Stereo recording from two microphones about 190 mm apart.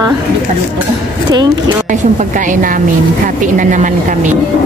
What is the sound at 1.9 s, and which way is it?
A woman's voice, 40° right (ahead or behind).